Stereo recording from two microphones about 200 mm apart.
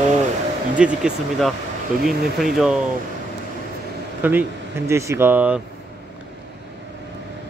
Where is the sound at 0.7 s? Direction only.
5° right (ahead or behind).